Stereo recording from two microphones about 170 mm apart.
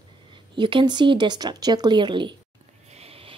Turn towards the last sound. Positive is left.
turn(degrees=-35)  # may be behind; listen again after turning